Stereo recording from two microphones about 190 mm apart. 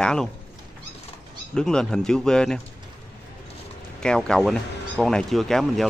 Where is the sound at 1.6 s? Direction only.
5° left (ahead or behind).